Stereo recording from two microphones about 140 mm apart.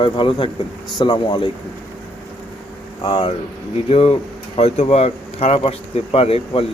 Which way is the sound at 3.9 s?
45° left (ahead or behind).